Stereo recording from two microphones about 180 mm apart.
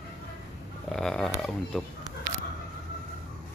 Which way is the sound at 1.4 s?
Centre (ahead or behind).